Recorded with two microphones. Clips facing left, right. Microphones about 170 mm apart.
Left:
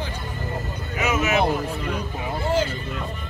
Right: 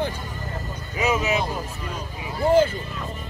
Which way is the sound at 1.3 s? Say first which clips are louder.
Left 5 dB; 65° left (ahead or behind).